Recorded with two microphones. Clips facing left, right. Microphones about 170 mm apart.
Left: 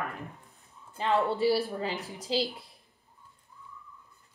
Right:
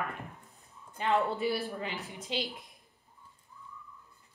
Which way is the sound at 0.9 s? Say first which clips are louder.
Left 2 dB; 35° left (ahead or behind).